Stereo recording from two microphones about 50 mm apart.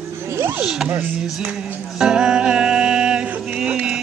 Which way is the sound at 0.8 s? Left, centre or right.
Right.